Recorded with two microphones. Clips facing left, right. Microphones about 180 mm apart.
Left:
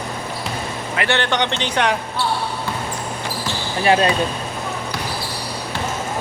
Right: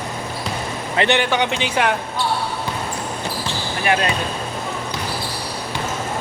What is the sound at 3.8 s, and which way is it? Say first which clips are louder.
Speech: left 4 dB; 30° left (ahead or behind).